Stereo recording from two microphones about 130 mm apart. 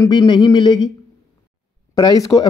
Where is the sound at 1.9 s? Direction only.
30° left (ahead or behind).